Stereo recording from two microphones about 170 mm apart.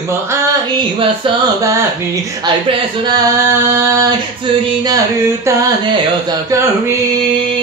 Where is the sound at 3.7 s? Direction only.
20° right (ahead or behind).